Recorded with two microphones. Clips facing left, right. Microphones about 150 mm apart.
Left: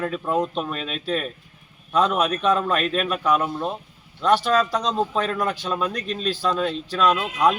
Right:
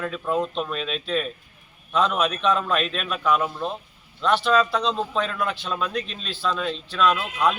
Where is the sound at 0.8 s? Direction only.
45° left (ahead or behind).